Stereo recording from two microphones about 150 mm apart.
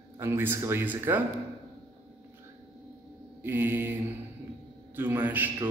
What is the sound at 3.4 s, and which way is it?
A man's voice, 15° right (ahead or behind).